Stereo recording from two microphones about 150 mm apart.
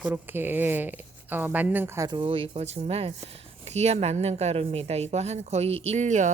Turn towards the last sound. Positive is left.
turn(degrees=-50)  # may be behind; listen again after turning